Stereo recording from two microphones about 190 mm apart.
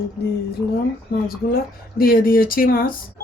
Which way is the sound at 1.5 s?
50° left (ahead or behind).